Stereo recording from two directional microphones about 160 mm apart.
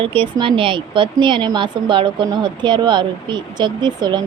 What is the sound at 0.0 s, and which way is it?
Speech, 35° right (ahead or behind).